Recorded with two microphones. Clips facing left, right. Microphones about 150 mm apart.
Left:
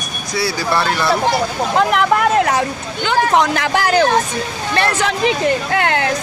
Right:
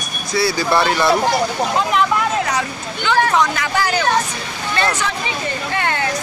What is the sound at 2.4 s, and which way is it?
Speech, 50° left (ahead or behind).